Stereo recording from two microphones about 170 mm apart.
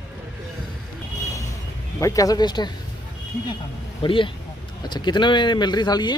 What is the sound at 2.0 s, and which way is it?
Speech, 20° left (ahead or behind).